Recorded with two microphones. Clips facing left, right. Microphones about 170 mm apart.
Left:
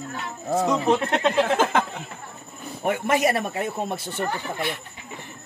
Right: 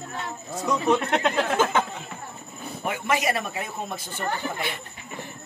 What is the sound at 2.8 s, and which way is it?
Speech, 50° left (ahead or behind).